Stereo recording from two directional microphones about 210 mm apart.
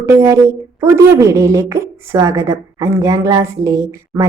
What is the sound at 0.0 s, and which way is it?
A woman's voice, 10° right (ahead or behind).